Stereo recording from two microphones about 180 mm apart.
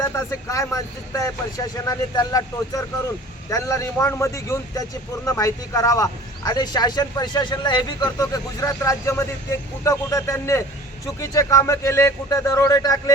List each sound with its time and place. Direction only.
0.3 s speech: 15° left (ahead or behind)